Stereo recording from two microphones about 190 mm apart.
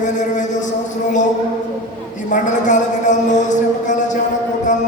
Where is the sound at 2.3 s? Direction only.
40° left (ahead or behind).